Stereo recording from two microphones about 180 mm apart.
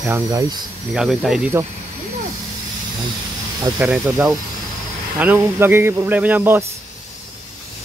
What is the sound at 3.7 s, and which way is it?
Speech, 5° right (ahead or behind).